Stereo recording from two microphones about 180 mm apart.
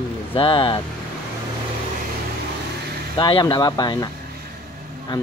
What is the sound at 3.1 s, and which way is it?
Speech, 25° left (ahead or behind).